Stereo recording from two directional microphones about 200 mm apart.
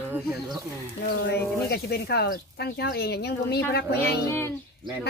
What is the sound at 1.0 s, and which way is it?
Speech, 50° left (ahead or behind).